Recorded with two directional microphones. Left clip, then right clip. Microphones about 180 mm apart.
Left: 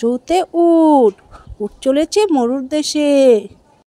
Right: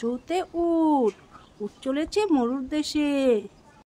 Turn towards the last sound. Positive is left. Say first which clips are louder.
# left 12 dB
turn(degrees=35)  # may be behind; listen again after turning